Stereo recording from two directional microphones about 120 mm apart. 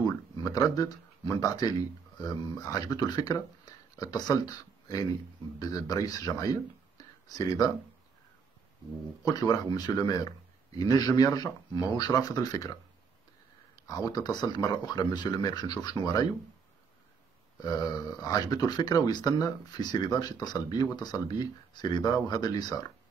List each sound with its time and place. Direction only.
0.0 s speech: 30° left (ahead or behind)
9.2 s speech: 30° left (ahead or behind)
13.8 s speech: 30° left (ahead or behind)
17.6 s speech: 30° left (ahead or behind)